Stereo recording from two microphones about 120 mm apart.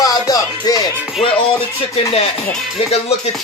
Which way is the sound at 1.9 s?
55° left (ahead or behind).